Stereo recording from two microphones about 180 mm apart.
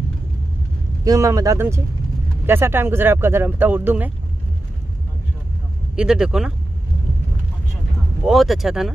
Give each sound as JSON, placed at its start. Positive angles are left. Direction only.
{"t": 1.0, "sound": "speech", "side_deg": -20}
{"t": 5.9, "sound": "speech", "side_deg": -5}
{"t": 8.3, "sound": "speech", "side_deg": 0}